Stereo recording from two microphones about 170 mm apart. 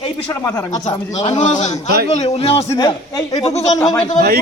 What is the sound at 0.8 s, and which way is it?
A man's voice, 40° left (ahead or behind).